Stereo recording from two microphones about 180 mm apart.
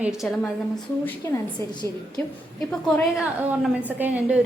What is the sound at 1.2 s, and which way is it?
Speech, 15° left (ahead or behind).